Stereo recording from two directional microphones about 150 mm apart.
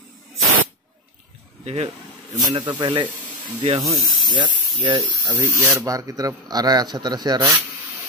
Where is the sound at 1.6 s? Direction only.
45° right (ahead or behind).